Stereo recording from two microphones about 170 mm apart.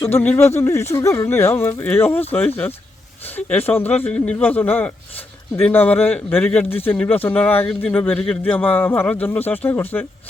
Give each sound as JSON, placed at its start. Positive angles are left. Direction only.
{"t": 0.2, "sound": "a man's voice", "side_deg": 10}